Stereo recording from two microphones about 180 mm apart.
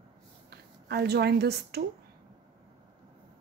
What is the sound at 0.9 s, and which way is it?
Speech, 65° right (ahead or behind).